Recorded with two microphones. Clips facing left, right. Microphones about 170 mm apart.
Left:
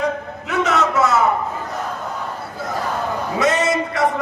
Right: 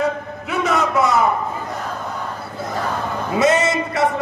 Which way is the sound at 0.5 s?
15° right (ahead or behind).